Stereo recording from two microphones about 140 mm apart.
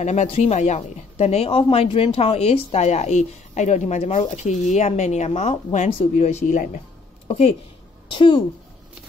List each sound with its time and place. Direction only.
0.0 s a woman's voice: 55° left (ahead or behind)
7.2 s speech: 45° left (ahead or behind)
8.1 s a woman's voice: 35° left (ahead or behind)